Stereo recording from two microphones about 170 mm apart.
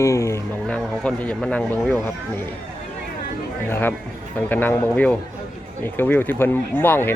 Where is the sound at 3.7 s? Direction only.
10° left (ahead or behind).